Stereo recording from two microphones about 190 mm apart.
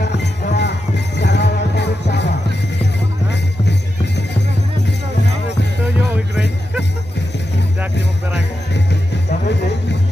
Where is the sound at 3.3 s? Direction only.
65° left (ahead or behind).